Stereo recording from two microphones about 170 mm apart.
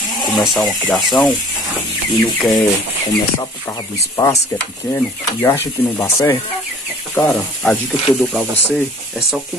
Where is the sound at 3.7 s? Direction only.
20° left (ahead or behind).